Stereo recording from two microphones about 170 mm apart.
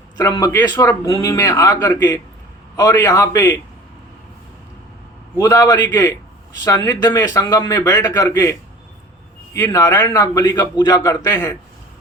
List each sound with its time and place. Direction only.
0.2 s a man's voice: 20° left (ahead or behind)
5.4 s a man's voice: 20° left (ahead or behind)